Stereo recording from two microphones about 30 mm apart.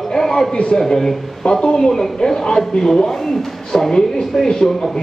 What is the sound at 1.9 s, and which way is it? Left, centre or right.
Speech, centre.